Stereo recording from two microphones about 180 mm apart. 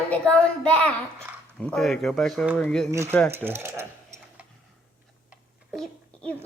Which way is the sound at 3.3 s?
10° right (ahead or behind).